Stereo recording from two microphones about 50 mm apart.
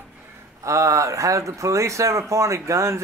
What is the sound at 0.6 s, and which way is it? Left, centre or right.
Speech, right.